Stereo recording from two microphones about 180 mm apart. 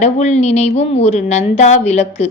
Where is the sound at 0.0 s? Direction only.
40° left (ahead or behind).